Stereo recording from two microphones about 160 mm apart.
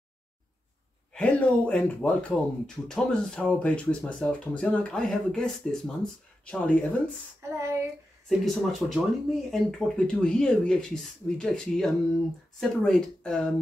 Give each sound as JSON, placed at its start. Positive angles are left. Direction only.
{"t": 1.1, "sound": "speech", "side_deg": 10}
{"t": 7.4, "sound": "child singing", "side_deg": -15}
{"t": 8.3, "sound": "speech", "side_deg": 0}